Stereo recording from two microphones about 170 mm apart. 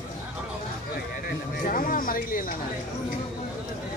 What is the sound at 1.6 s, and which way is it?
Speech, 55° left (ahead or behind).